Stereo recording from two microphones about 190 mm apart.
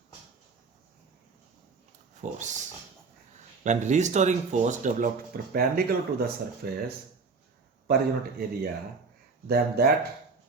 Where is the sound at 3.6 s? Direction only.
40° right (ahead or behind).